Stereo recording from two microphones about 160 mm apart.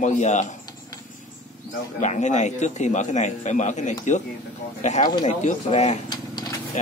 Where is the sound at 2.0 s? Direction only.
45° left (ahead or behind).